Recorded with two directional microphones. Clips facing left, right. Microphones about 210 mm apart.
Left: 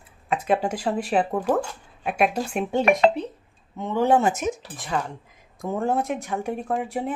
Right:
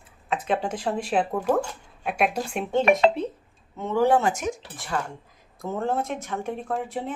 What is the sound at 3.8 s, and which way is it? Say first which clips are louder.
Speech: left 1 dB; 20° left (ahead or behind).